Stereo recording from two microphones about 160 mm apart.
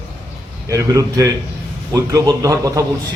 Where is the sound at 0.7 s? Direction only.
20° right (ahead or behind).